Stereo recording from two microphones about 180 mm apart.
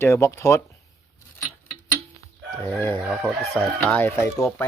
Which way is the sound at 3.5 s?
5° left (ahead or behind).